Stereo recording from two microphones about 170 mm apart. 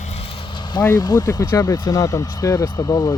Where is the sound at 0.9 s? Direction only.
25° left (ahead or behind).